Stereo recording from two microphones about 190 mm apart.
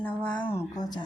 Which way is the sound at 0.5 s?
20° left (ahead or behind).